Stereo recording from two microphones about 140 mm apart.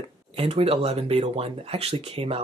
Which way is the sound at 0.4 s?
45° right (ahead or behind).